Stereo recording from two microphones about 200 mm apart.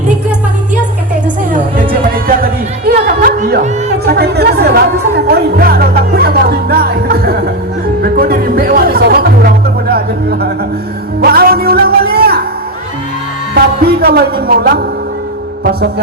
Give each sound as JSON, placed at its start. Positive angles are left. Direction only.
{"t": 1.5, "sound": "music", "side_deg": -45}
{"t": 13.5, "sound": "music", "side_deg": -50}